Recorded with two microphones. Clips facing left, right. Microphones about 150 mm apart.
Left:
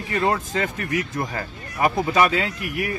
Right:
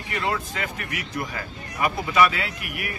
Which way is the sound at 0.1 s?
45° left (ahead or behind).